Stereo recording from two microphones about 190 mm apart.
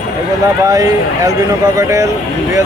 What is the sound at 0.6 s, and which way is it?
Speech, 20° right (ahead or behind).